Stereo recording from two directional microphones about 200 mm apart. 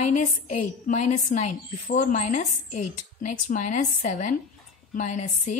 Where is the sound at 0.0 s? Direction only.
40° left (ahead or behind).